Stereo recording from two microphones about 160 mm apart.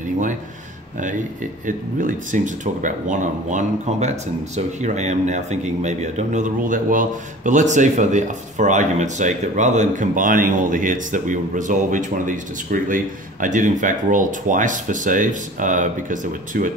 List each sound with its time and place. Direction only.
2.0 s speech: 55° right (ahead or behind)